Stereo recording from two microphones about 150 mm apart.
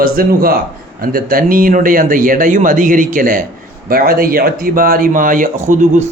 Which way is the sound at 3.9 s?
80° right.